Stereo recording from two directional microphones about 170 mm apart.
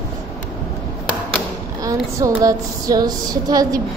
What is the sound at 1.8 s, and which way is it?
Child singing, 20° right (ahead or behind).